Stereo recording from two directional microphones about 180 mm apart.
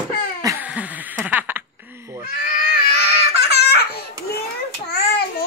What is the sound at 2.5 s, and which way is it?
Baby cry, 55° left (ahead or behind).